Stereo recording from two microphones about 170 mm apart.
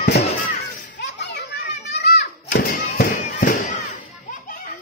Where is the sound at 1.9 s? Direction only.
75° left (ahead or behind).